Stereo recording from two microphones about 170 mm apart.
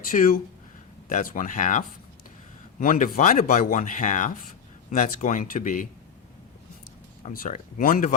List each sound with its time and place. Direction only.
0.1 s speech: 55° left (ahead or behind)
2.8 s speech: 50° left (ahead or behind)
7.3 s speech: 50° left (ahead or behind)